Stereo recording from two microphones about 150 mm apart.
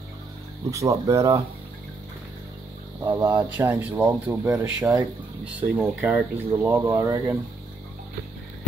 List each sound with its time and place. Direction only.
0.7 s speech: 20° right (ahead or behind)
3.0 s speech: 25° right (ahead or behind)
3.4 s speech: 10° right (ahead or behind)
5.4 s speech: 5° right (ahead or behind)